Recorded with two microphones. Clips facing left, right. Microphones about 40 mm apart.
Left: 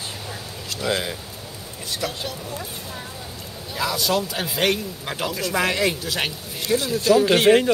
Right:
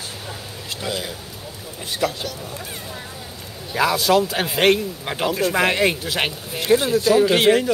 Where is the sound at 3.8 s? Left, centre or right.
Right.